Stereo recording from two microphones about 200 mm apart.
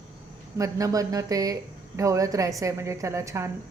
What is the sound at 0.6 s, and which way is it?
A woman's voice, 15° right (ahead or behind).